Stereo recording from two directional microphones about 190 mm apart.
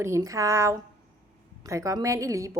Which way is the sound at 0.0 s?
15° right (ahead or behind).